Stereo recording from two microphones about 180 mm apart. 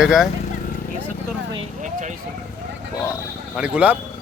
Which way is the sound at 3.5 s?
5° right (ahead or behind).